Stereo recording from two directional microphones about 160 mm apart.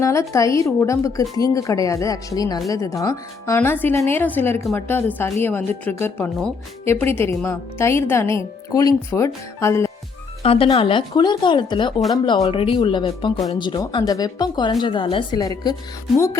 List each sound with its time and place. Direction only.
0.0 s a woman's voice: 20° left (ahead or behind)
10.4 s a woman's voice: 35° left (ahead or behind); by 16.4 s 20° left (ahead or behind)